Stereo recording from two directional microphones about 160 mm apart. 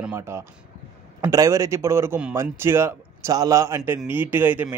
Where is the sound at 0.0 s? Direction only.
15° right (ahead or behind).